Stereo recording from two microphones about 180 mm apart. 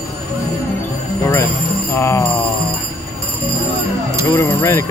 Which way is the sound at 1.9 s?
15° left (ahead or behind).